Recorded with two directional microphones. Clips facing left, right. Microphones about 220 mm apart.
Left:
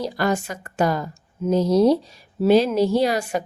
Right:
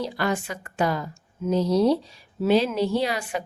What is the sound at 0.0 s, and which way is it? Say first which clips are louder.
A woman's voice: left 3 dB; 40° left (ahead or behind).